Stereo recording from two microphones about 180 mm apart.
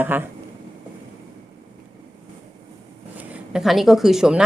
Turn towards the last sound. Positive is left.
turn(degrees=0)  # may be behind; listen again after turning